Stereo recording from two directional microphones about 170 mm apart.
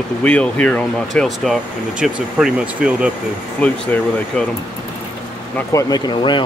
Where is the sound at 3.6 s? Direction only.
10° left (ahead or behind).